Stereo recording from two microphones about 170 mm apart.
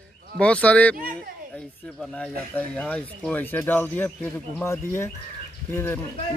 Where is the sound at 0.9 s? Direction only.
55° right (ahead or behind).